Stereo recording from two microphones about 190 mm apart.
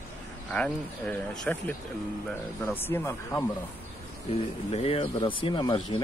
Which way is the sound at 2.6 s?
10° left (ahead or behind).